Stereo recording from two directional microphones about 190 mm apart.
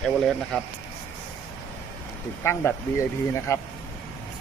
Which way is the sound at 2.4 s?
15° left (ahead or behind).